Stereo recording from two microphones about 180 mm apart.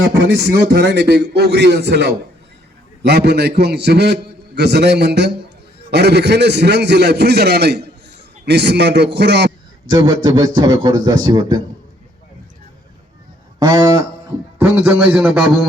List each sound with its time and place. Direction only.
0.0 s a man's voice: 70° right (ahead or behind)
10.2 s a man's voice: 25° right (ahead or behind)
13.6 s a man's voice: 20° right (ahead or behind)